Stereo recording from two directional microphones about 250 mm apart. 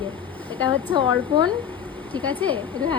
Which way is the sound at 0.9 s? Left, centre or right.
Centre.